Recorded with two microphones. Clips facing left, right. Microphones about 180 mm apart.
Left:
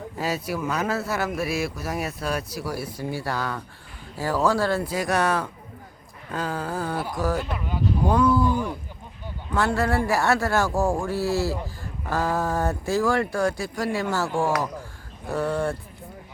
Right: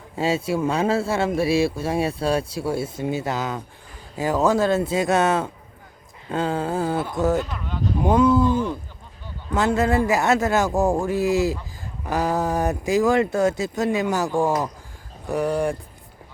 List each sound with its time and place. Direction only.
0.2 s speech: 25° right (ahead or behind)